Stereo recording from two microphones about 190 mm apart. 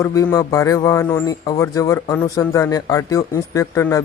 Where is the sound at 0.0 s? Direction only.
15° left (ahead or behind).